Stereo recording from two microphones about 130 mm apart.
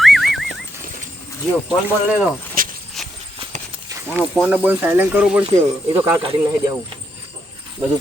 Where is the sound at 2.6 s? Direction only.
90° right.